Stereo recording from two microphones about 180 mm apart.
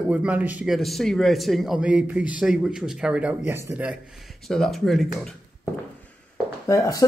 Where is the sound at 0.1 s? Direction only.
5° right (ahead or behind).